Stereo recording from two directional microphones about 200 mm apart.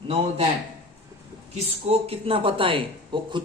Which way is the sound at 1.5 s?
30° right (ahead or behind).